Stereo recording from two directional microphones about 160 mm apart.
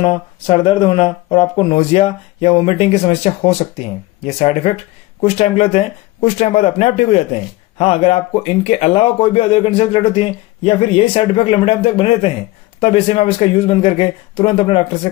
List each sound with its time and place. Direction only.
0.0 s speech: 35° left (ahead or behind)